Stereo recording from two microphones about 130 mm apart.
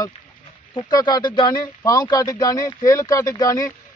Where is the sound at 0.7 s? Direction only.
35° left (ahead or behind).